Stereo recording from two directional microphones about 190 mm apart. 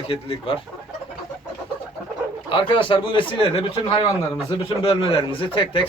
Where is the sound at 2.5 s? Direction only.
25° left (ahead or behind).